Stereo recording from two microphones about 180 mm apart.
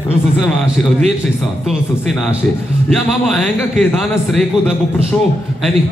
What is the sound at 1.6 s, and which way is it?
A man's voice, centre (ahead or behind).